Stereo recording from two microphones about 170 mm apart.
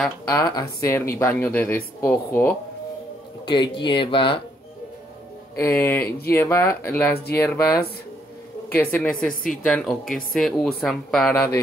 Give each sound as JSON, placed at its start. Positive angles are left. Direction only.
{"t": 0.3, "sound": "speech", "side_deg": 20}
{"t": 3.4, "sound": "speech", "side_deg": 25}
{"t": 5.6, "sound": "speech", "side_deg": 15}
{"t": 9.3, "sound": "speech", "side_deg": 50}
{"t": 9.7, "sound": "speech", "side_deg": 0}